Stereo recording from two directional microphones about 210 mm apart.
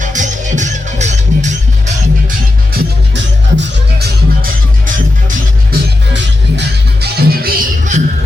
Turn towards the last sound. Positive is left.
turn(degrees=-40)  # may be behind; listen again after turning